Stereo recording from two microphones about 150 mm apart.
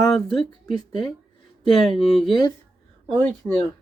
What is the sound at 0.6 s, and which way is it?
Speech, 30° left (ahead or behind).